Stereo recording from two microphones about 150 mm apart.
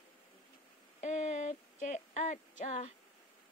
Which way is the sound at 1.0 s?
50° left (ahead or behind).